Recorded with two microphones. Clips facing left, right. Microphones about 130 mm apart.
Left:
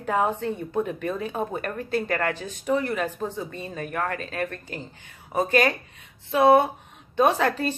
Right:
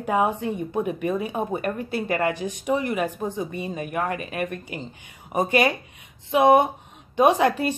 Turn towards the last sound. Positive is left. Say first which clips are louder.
# right 3 dB
turn(degrees=-15)  # may be behind; listen again after turning